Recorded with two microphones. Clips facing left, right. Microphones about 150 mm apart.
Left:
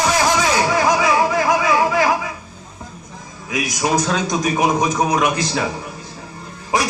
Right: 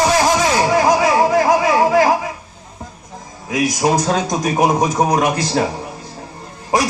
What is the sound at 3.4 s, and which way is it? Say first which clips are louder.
A man's voice: right 4 dB; 35° right (ahead or behind).